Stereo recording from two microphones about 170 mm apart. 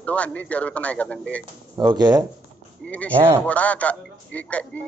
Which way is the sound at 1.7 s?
25° right (ahead or behind).